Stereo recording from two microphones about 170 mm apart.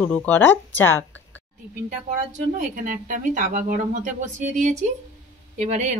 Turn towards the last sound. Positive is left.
turn(degrees=-45)  # may be behind; listen again after turning